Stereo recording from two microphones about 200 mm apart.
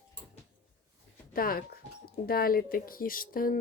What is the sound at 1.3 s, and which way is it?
Speech, 45° left (ahead or behind).